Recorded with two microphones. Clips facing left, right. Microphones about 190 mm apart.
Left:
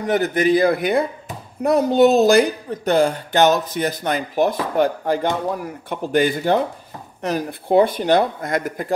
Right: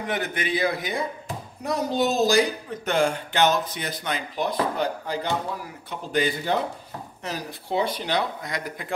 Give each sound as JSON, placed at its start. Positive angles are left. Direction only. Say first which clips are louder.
{"t": 0.0, "sound": "a woman's voice", "louder": "left 10 dB", "side_deg": 40}
{"t": 2.8, "sound": "speech", "louder": "left 6 dB", "side_deg": 35}